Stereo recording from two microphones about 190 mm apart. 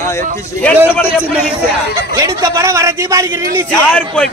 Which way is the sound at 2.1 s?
15° right (ahead or behind).